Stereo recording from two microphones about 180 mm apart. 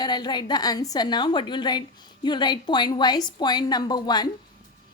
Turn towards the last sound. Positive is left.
turn(degrees=25)  # may be behind; listen again after turning